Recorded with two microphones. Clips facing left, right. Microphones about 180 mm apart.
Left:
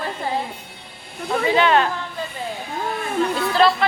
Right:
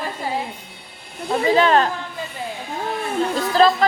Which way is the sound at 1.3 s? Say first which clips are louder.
Right 1 dB; 35° right (ahead or behind).